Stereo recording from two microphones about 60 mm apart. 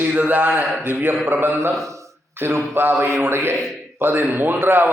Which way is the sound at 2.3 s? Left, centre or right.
Right.